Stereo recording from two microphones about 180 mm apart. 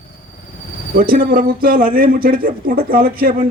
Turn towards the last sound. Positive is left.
turn(degrees=-55)  # may be behind; listen again after turning